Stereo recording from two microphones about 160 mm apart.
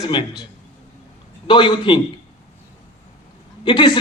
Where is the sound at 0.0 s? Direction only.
30° left (ahead or behind).